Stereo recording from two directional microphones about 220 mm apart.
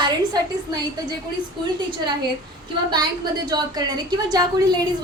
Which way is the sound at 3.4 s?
20° right (ahead or behind).